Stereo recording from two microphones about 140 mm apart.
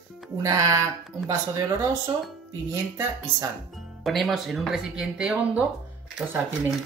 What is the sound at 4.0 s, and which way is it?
Speech, centre (ahead or behind).